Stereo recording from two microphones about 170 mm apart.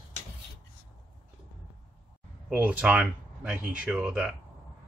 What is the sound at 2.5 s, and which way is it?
Speech, 10° right (ahead or behind).